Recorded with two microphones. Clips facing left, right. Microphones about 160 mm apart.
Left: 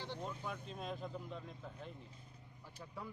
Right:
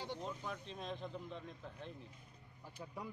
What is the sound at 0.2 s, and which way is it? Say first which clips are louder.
Speech: even; 5° left (ahead or behind).